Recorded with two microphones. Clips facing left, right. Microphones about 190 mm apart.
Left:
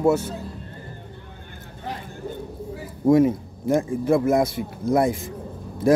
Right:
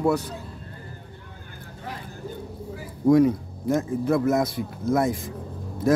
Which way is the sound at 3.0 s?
25° left (ahead or behind).